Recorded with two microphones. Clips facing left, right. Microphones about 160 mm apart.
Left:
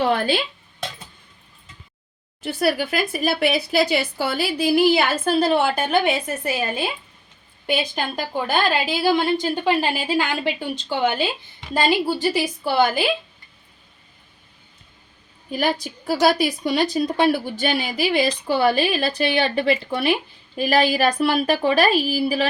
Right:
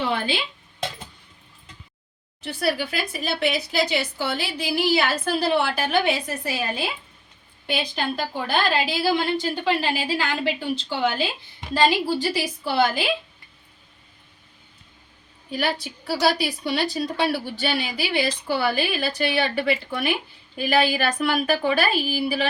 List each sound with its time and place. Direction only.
0.0 s a sound: 50° left (ahead or behind)
2.4 s a woman's voice: 55° left (ahead or behind)
5.2 s a woman's voice: 45° left (ahead or behind)
7.7 s a woman's voice: 45° left (ahead or behind)
15.4 s a woman's voice: 45° left (ahead or behind)